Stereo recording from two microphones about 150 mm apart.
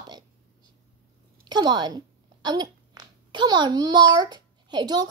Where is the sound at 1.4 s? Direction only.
30° right (ahead or behind).